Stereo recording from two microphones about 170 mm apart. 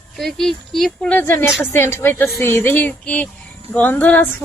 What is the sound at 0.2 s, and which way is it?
Speech, centre (ahead or behind).